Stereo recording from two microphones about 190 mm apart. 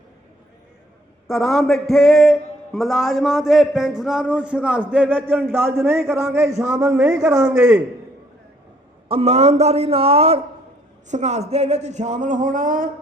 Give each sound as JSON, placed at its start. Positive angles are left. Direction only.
{"t": 1.3, "sound": "a man's voice", "side_deg": 0}
{"t": 9.0, "sound": "speech", "side_deg": -30}